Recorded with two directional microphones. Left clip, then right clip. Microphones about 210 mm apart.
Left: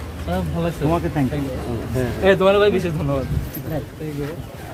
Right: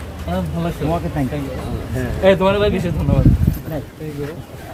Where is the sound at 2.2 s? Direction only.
5° right (ahead or behind).